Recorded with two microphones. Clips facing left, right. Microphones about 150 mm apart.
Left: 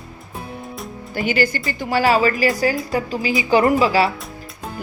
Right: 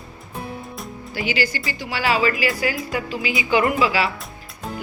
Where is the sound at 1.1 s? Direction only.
50° left (ahead or behind).